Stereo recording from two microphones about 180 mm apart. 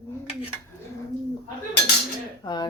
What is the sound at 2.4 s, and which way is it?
Speech, 25° left (ahead or behind).